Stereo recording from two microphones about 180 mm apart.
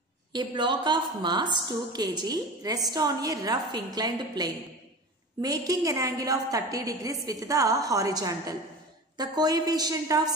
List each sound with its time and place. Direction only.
0.3 s a woman's voice: 25° right (ahead or behind)